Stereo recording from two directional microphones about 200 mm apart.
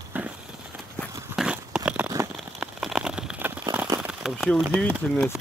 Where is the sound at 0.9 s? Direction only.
Centre (ahead or behind); by 4.0 s 20° right (ahead or behind).